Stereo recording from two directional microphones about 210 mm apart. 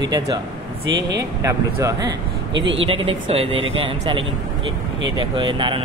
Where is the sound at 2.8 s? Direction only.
25° right (ahead or behind).